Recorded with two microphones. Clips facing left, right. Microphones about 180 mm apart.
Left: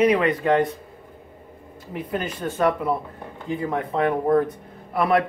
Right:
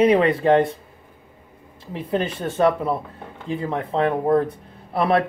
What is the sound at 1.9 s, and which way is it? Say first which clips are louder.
Speech: right 4 dB; 25° right (ahead or behind).